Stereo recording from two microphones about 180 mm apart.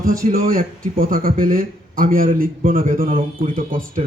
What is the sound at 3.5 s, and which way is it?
Speech, 50° right (ahead or behind).